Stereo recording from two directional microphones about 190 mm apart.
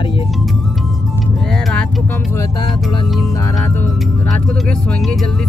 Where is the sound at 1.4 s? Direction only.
5° left (ahead or behind).